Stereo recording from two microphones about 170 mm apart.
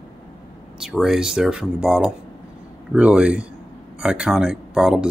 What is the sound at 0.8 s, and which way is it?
Speech, centre (ahead or behind).